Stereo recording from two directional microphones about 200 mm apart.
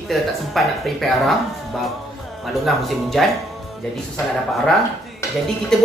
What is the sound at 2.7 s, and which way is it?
Speech, centre (ahead or behind).